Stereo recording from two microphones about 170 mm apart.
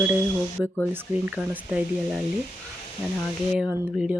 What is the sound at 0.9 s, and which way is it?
Speech, 10° right (ahead or behind).